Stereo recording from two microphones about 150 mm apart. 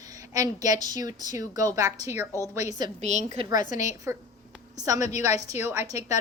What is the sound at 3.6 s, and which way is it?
Speech, 55° left (ahead or behind).